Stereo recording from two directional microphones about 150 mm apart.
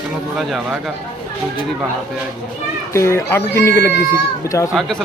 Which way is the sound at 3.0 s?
20° left (ahead or behind).